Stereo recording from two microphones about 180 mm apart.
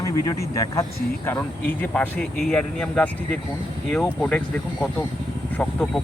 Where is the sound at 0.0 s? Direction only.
15° left (ahead or behind).